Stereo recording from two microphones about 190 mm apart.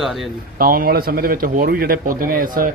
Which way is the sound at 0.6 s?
50° right (ahead or behind).